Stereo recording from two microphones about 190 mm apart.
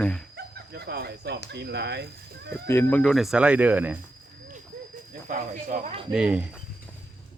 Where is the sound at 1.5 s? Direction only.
65° right (ahead or behind).